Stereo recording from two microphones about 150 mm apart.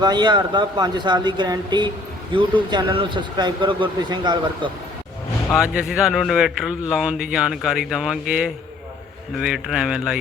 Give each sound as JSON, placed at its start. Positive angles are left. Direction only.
{"t": 0.0, "sound": "speech", "side_deg": -30}
{"t": 5.5, "sound": "a man's voice", "side_deg": -5}